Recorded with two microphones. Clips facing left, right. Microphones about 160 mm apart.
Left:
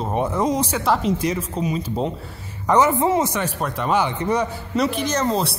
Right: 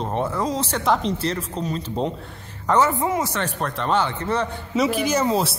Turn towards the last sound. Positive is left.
turn(degrees=-5)  # may be behind; listen again after turning